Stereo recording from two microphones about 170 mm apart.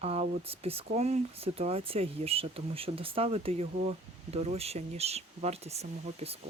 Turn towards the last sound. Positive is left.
turn(degrees=-35)  # may be behind; listen again after turning